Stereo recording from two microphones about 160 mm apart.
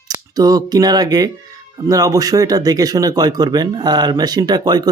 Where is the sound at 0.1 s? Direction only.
25° right (ahead or behind).